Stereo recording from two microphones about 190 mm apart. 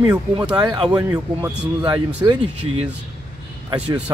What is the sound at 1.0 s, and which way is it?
Speech, 10° right (ahead or behind).